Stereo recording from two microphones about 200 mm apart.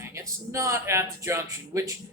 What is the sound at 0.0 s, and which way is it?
Speech, 15° right (ahead or behind).